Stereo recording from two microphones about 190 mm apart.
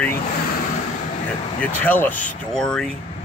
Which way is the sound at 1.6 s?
10° left (ahead or behind).